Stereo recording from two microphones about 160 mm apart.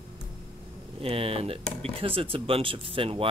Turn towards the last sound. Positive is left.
turn(degrees=-35)  # may be behind; listen again after turning